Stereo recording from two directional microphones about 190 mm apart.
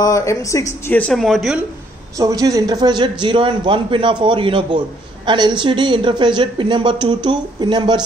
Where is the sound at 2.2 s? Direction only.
20° right (ahead or behind).